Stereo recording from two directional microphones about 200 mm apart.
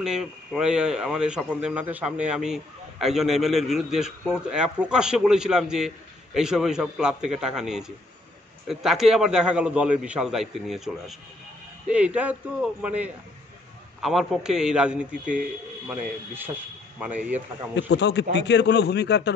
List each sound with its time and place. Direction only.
0.0 s a man's voice: centre (ahead or behind)
17.7 s a man's voice: 60° left (ahead or behind)